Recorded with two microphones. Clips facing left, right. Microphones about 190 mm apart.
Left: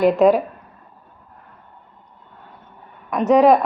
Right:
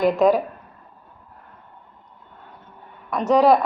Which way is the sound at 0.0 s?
10° left (ahead or behind).